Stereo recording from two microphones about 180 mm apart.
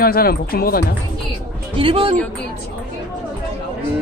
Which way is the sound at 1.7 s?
30° right (ahead or behind).